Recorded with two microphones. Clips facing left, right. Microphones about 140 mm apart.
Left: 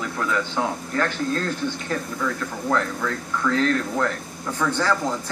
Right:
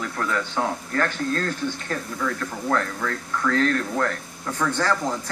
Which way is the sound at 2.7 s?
20° left (ahead or behind).